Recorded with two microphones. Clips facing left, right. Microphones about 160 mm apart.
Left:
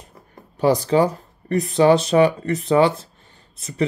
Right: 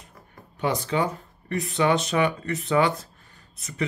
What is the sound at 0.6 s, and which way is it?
Speech, 35° left (ahead or behind).